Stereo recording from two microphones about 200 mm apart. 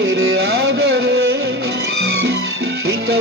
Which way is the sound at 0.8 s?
55° right (ahead or behind).